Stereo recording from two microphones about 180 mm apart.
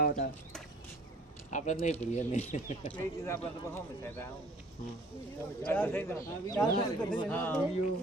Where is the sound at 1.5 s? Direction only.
45° left (ahead or behind).